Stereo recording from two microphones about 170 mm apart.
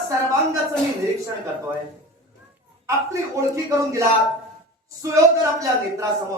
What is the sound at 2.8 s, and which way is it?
Speech, 20° right (ahead or behind).